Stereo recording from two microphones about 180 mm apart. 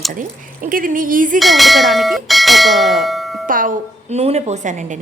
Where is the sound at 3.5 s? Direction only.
50° right (ahead or behind).